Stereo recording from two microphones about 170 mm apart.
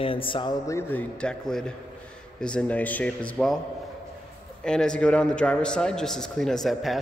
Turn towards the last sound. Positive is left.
turn(degrees=0)  # may be behind; listen again after turning